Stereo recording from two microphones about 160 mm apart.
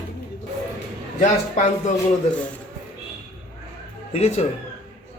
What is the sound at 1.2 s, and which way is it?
Speech, 50° left (ahead or behind).